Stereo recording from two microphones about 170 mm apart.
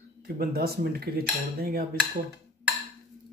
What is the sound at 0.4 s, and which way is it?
Cutlery, 65° right (ahead or behind).